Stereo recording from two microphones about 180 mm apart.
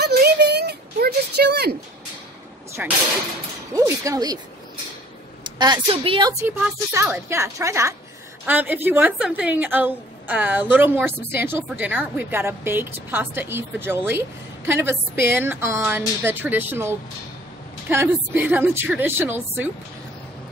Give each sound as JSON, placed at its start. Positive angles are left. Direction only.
{"t": 0.0, "sound": "a sound", "side_deg": -60}
{"t": 2.8, "sound": "a woman's voice", "side_deg": -5}
{"t": 5.6, "sound": "a woman's voice", "side_deg": -25}
{"t": 6.3, "sound": "a woman's voice", "side_deg": -15}